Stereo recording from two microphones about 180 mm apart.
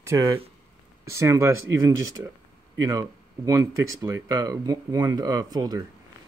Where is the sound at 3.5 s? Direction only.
20° right (ahead or behind).